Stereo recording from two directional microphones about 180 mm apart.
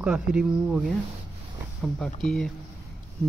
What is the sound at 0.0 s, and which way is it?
Speech, 5° right (ahead or behind).